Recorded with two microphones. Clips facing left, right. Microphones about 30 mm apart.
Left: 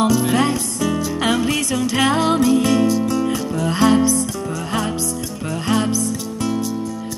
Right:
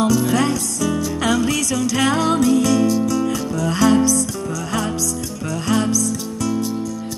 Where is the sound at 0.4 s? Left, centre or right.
Left.